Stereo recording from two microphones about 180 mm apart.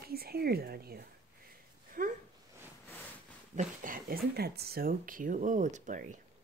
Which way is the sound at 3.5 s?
50° right (ahead or behind).